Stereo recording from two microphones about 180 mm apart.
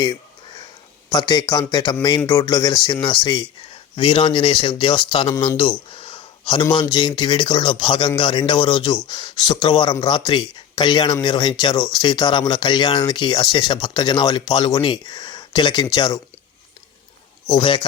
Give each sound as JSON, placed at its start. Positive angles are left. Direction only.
{"t": 1.1, "sound": "speech", "side_deg": 20}
{"t": 17.5, "sound": "speech", "side_deg": 25}